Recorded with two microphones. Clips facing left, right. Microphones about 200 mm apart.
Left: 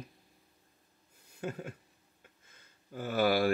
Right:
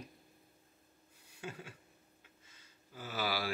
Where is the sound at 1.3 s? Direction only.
45° left (ahead or behind).